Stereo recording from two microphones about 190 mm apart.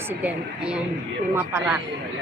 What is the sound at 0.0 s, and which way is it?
A woman's voice, 10° right (ahead or behind).